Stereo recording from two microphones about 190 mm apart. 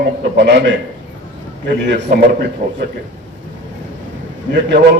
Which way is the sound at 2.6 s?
40° right (ahead or behind).